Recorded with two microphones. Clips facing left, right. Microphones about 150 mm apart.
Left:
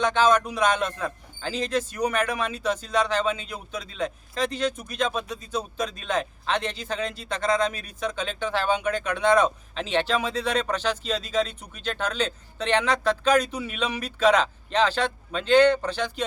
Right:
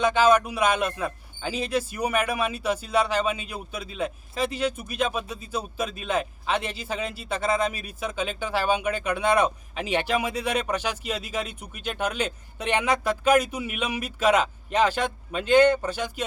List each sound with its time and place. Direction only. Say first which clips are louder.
0.0 s speech: right 1 dB; 10° right (ahead or behind)